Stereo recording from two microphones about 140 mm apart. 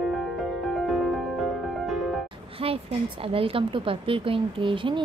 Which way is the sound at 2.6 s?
40° right (ahead or behind).